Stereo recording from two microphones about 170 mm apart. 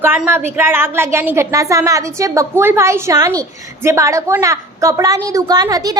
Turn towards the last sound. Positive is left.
turn(degrees=-20)  # may be behind; listen again after turning